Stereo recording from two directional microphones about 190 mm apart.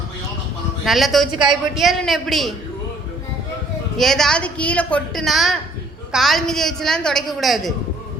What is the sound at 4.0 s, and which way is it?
A woman's voice, centre (ahead or behind).